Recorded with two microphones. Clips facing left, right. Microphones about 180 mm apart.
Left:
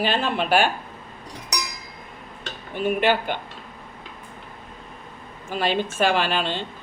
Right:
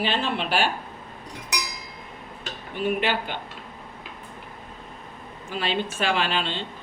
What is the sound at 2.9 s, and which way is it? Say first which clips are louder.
Speech: left 5 dB; 50° left (ahead or behind).